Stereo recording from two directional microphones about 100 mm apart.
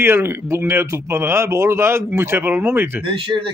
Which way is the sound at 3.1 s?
55° right (ahead or behind).